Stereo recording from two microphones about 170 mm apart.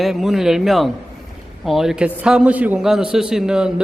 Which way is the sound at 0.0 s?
Centre (ahead or behind).